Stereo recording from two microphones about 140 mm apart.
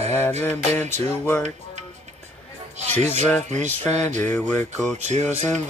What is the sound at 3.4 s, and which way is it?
Music, 55° right (ahead or behind).